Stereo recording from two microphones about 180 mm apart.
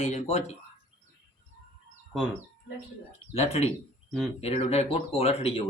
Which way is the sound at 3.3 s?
35° left (ahead or behind).